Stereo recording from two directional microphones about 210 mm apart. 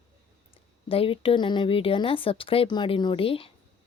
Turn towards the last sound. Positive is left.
turn(degrees=25)  # may be behind; listen again after turning